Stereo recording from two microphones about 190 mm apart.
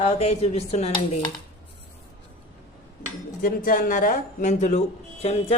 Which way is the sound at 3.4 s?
45° left (ahead or behind).